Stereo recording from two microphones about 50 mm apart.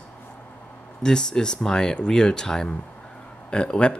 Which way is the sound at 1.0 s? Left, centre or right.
Centre.